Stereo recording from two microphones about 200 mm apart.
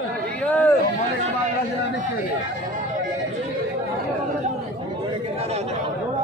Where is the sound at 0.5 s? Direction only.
10° left (ahead or behind).